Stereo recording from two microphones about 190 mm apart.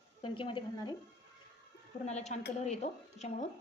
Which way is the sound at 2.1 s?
35° left (ahead or behind).